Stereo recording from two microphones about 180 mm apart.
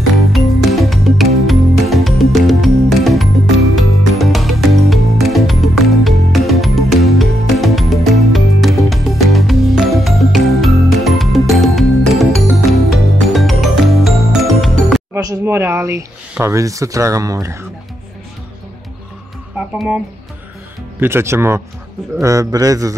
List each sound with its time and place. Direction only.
0.2 s music: centre (ahead or behind)
15.1 s speech: 15° right (ahead or behind)
21.0 s speech: 15° right (ahead or behind)